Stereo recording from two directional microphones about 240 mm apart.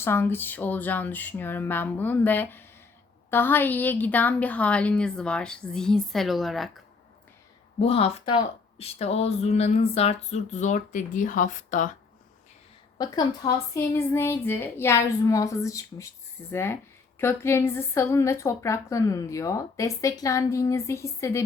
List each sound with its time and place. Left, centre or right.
0.0 s a woman's voice: centre
7.8 s speech: left
13.0 s a woman's voice: centre